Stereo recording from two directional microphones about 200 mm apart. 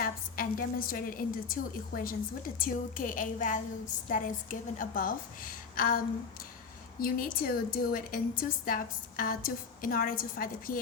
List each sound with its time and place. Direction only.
0.0 s a woman's voice: 45° left (ahead or behind)
7.0 s a woman's voice: 45° left (ahead or behind)